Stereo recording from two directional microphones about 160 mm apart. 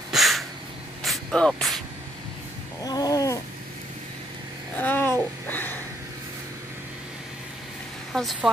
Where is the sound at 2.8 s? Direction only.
25° left (ahead or behind).